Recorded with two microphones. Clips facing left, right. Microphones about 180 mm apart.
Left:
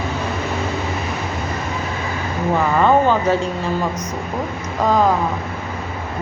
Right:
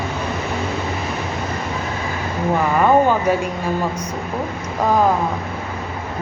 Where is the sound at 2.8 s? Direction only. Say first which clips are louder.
Even; 10° right (ahead or behind).